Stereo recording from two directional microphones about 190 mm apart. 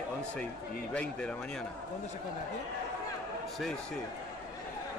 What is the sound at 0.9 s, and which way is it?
Speech, 5° left (ahead or behind).